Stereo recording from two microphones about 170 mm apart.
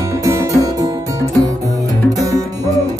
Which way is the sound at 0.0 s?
20° right (ahead or behind).